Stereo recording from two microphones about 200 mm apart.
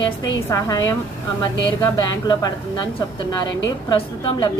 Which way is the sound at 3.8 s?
20° left (ahead or behind).